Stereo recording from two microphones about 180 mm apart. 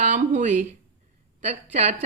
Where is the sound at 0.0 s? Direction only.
45° right (ahead or behind).